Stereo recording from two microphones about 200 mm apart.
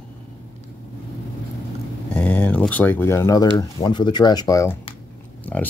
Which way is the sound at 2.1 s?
5° left (ahead or behind).